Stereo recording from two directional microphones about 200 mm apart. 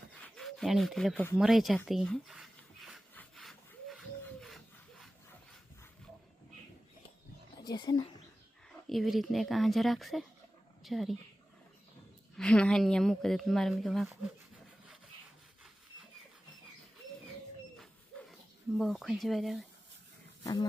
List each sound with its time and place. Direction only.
0.1 s a sound: 5° left (ahead or behind)
7.6 s speech: 20° left (ahead or behind)
8.9 s a woman's voice: centre (ahead or behind)
12.4 s a woman's voice: 5° left (ahead or behind)
18.8 s a woman's voice: centre (ahead or behind)
20.4 s speech: 20° left (ahead or behind)